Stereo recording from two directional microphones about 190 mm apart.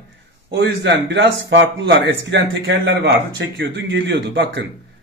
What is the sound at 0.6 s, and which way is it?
Speech, 65° right (ahead or behind).